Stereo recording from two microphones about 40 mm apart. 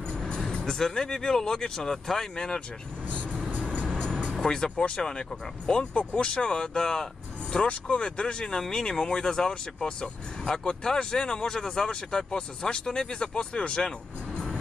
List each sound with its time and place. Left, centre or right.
0.2 s music: centre
0.7 s speech: centre
3.5 s music: right
3.8 s music: left
4.4 s speech: centre
7.6 s speech: left
8.0 s speech: left